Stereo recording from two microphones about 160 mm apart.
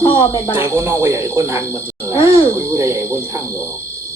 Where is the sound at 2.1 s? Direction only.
35° left (ahead or behind).